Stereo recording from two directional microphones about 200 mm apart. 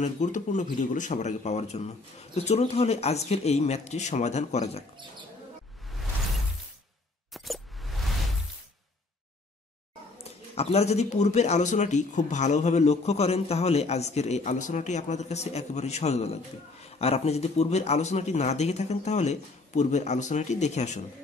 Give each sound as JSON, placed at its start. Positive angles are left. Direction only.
{"t": 0.0, "sound": "a man's voice", "side_deg": 40}
{"t": 7.3, "sound": "music", "side_deg": 0}
{"t": 10.5, "sound": "a man's voice", "side_deg": 30}